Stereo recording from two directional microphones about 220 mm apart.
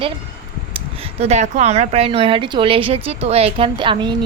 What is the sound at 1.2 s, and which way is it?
A woman's voice, 30° right (ahead or behind).